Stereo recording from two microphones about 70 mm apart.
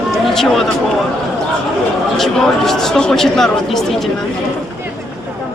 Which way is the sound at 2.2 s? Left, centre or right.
Centre.